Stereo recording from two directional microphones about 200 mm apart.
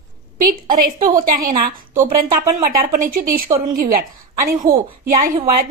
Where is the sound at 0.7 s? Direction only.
45° right (ahead or behind).